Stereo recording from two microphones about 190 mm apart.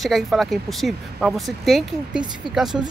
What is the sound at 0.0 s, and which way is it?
Speech, centre (ahead or behind).